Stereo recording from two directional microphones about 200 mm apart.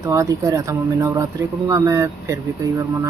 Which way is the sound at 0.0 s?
15° right (ahead or behind).